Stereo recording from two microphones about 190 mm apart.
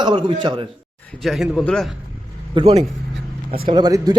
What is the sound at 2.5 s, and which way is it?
A man's voice, 30° right (ahead or behind).